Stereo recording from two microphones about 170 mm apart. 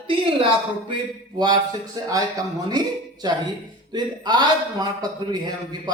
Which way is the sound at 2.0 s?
20° right (ahead or behind).